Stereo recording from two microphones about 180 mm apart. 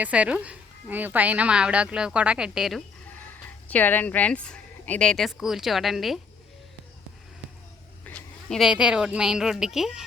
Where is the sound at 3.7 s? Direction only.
10° left (ahead or behind).